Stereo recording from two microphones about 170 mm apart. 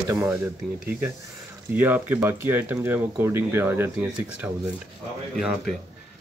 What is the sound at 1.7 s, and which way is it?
A man's voice, 10° right (ahead or behind).